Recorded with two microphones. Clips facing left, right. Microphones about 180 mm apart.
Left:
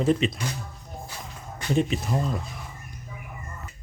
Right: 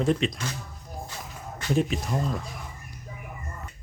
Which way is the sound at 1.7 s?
Centre (ahead or behind).